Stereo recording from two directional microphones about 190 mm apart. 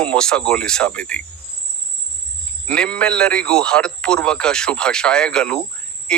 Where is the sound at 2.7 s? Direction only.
5° left (ahead or behind).